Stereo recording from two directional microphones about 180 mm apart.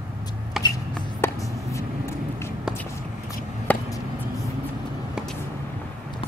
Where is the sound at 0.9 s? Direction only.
15° left (ahead or behind).